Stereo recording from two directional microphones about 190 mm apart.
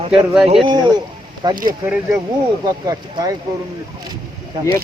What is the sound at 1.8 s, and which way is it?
Speech, 10° right (ahead or behind).